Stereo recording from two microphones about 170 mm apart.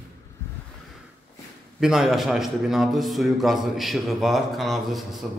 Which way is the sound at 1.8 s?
5° right (ahead or behind).